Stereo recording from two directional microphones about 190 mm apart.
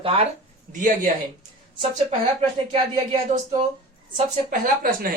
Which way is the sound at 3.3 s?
35° right (ahead or behind).